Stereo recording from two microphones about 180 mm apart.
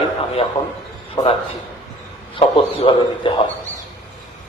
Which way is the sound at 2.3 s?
30° left (ahead or behind).